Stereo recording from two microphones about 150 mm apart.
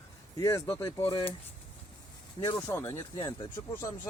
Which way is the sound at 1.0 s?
35° left (ahead or behind).